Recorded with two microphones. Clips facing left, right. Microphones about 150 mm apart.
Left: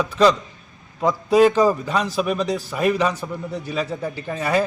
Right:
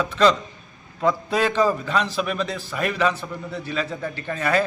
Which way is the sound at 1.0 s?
10° left (ahead or behind).